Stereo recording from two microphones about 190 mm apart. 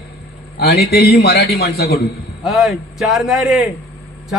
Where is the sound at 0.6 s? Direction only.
55° left (ahead or behind).